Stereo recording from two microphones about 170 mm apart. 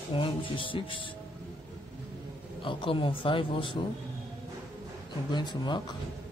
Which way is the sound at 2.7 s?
30° left (ahead or behind).